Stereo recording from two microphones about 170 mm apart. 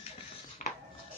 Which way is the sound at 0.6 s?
45° left (ahead or behind).